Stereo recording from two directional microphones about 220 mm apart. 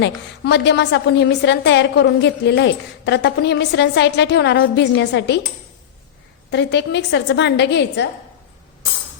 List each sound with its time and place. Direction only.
0.4 s a woman's voice: 50° left (ahead or behind)
6.5 s a woman's voice: 50° left (ahead or behind)